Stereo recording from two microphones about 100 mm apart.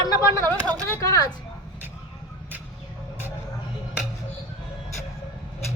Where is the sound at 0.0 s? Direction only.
35° left (ahead or behind).